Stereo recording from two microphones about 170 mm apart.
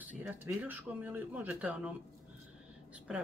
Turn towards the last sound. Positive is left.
turn(degrees=-5)  # may be behind; listen again after turning